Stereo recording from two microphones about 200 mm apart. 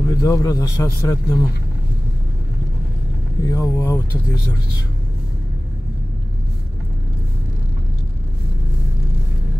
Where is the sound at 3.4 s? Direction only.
15° left (ahead or behind).